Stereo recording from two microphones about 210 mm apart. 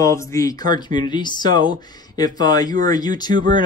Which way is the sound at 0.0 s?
15° left (ahead or behind).